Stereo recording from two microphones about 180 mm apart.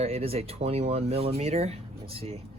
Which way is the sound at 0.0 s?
35° right (ahead or behind).